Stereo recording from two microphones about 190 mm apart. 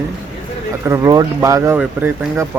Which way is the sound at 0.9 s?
20° right (ahead or behind).